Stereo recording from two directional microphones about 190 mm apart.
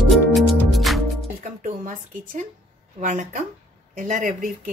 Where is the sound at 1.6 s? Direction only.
45° right (ahead or behind).